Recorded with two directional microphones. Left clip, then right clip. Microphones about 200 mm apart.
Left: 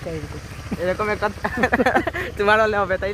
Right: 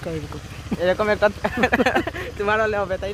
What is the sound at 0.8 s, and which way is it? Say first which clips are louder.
Speech: right 4 dB; 45° right (ahead or behind).